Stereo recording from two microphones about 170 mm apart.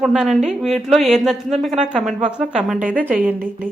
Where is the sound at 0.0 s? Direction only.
Centre (ahead or behind).